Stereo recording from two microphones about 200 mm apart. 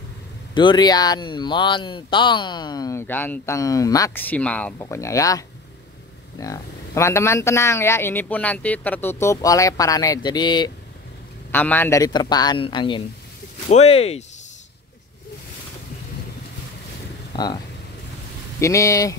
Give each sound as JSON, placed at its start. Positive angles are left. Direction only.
{"t": 0.6, "sound": "speech", "side_deg": 20}
{"t": 11.5, "sound": "speech", "side_deg": 10}
{"t": 17.3, "sound": "vehicle", "side_deg": 20}
{"t": 18.6, "sound": "speech", "side_deg": 15}